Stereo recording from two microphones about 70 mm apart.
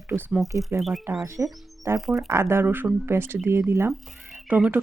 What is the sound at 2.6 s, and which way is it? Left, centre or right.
Speech, right.